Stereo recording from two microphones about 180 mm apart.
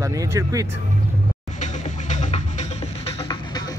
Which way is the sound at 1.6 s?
45° left (ahead or behind).